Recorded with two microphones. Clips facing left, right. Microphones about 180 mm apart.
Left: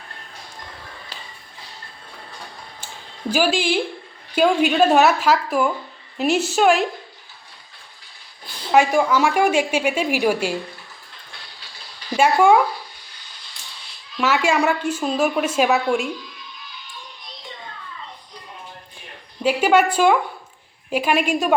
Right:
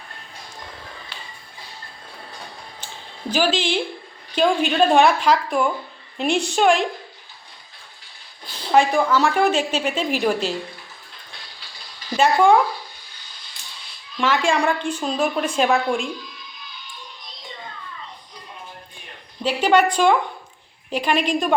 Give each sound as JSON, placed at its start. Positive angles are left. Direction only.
{"t": 1.1, "sound": "music", "side_deg": 40}
{"t": 3.2, "sound": "a woman's voice", "side_deg": 10}
{"t": 8.7, "sound": "a woman's voice", "side_deg": 10}
{"t": 12.1, "sound": "a woman's voice", "side_deg": 10}
{"t": 14.2, "sound": "a woman's voice", "side_deg": 10}
{"t": 19.4, "sound": "a woman's voice", "side_deg": 10}